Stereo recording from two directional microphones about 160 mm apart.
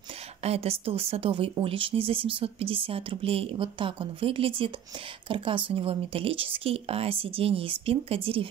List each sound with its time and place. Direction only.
0.4 s speech: 40° right (ahead or behind)